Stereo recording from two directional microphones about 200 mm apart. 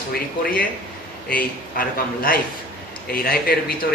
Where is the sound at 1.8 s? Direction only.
45° left (ahead or behind).